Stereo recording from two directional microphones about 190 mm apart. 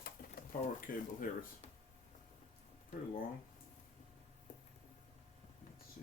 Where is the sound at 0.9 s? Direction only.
45° left (ahead or behind).